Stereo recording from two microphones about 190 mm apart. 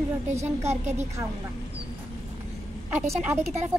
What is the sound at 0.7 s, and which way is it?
Speech, 35° right (ahead or behind).